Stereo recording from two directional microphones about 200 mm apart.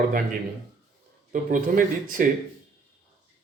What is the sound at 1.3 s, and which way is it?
Speech, 40° right (ahead or behind).